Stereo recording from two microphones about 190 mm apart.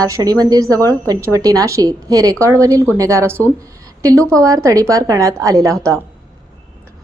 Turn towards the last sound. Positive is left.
turn(degrees=-15)  # may be behind; listen again after turning